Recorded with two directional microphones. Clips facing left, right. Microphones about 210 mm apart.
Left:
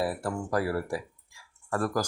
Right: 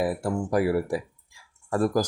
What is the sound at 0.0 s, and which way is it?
Speech, 15° right (ahead or behind).